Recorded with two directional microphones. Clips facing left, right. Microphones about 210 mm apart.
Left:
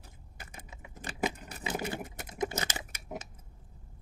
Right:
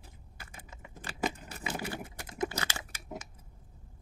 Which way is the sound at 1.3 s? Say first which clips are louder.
Left 2 dB; 20° left (ahead or behind).